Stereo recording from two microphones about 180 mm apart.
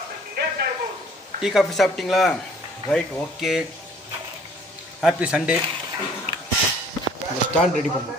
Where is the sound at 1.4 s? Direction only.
Centre (ahead or behind).